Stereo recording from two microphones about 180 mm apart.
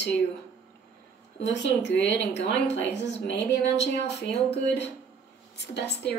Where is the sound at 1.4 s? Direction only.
75° left (ahead or behind).